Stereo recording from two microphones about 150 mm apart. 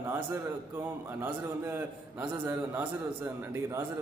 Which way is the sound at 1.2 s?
15° right (ahead or behind).